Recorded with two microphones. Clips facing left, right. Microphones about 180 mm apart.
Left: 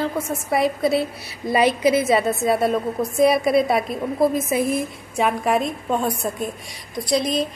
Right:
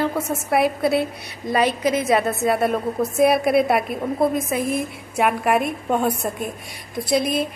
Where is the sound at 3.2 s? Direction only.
55° right (ahead or behind).